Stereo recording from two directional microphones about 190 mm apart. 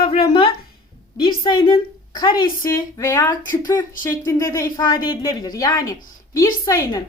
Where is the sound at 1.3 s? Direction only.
25° left (ahead or behind).